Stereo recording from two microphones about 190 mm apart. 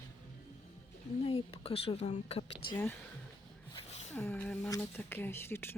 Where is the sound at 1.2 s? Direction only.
30° left (ahead or behind).